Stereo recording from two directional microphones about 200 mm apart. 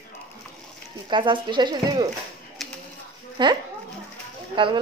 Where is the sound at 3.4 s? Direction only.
25° right (ahead or behind).